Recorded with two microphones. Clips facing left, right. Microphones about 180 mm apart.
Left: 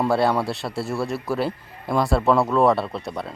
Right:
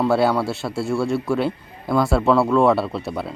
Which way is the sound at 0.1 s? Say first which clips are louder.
Right 2 dB; centre (ahead or behind).